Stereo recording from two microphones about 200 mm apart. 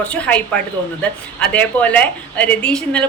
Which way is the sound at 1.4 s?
5° left (ahead or behind).